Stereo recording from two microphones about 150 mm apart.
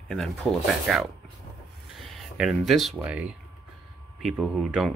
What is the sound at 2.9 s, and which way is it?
Speech, 10° right (ahead or behind).